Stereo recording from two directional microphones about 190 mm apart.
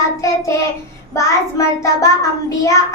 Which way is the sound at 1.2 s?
15° left (ahead or behind).